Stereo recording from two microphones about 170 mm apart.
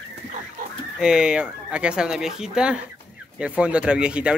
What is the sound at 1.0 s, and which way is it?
Speech, 5° right (ahead or behind).